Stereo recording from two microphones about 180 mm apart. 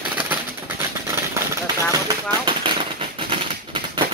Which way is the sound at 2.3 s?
25° right (ahead or behind).